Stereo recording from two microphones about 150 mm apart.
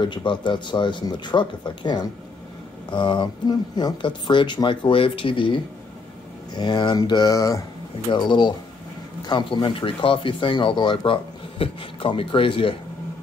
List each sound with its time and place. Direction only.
0.0 s speech: 30° left (ahead or behind)
6.5 s speech: 30° left (ahead or behind)